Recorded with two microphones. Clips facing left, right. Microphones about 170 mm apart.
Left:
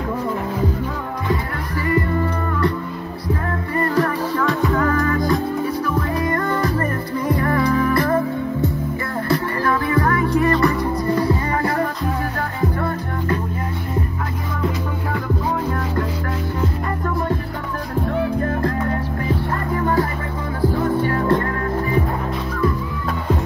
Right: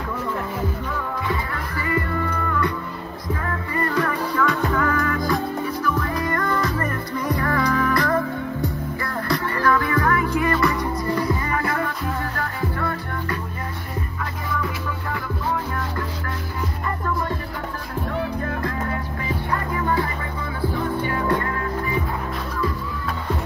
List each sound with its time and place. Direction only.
3.9 s music: 30° left (ahead or behind)
9.3 s music: 30° left (ahead or behind)
21.0 s music: 40° left (ahead or behind)